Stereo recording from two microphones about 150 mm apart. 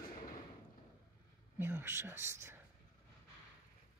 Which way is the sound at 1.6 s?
15° right (ahead or behind).